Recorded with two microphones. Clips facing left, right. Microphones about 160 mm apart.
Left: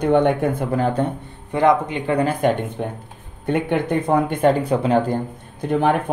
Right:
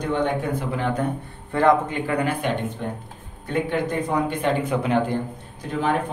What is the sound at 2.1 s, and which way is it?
Speech, 40° left (ahead or behind).